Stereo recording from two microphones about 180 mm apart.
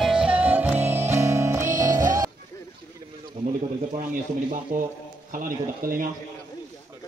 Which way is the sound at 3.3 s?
25° right (ahead or behind).